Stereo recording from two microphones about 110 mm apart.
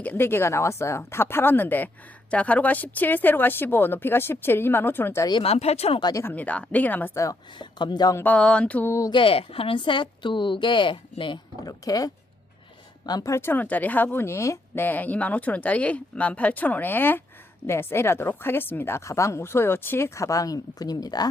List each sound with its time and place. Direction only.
0.0 s speech: 15° left (ahead or behind)
5.4 s speech: 70° left (ahead or behind)
6.1 s speech: 15° left (ahead or behind)
7.6 s a woman's voice: 45° left (ahead or behind)
8.1 s speech: 15° left (ahead or behind)
8.9 s speech: 30° left (ahead or behind)
9.1 s a woman's voice: 55° left (ahead or behind)
11.6 s speech: 35° left (ahead or behind)
14.8 s speech: 15° left (ahead or behind); by 21.2 s 35° left (ahead or behind)